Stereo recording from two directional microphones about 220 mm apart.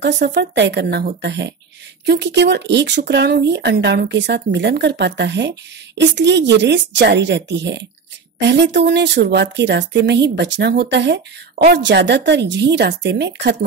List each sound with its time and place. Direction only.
0.0 s speech: 50° right (ahead or behind)